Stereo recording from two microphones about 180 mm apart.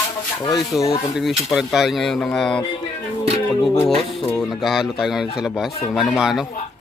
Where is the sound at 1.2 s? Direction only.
Centre (ahead or behind).